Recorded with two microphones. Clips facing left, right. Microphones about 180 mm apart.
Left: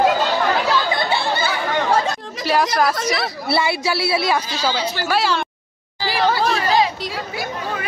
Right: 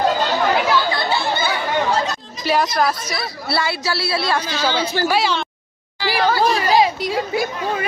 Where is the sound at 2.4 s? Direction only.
Centre (ahead or behind).